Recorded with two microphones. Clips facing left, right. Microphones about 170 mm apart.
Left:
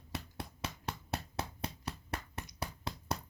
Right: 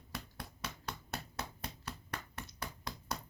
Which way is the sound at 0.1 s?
25° left (ahead or behind).